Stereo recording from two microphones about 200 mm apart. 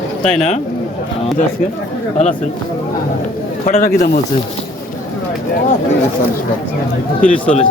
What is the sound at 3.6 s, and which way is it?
Speech, 45° left (ahead or behind).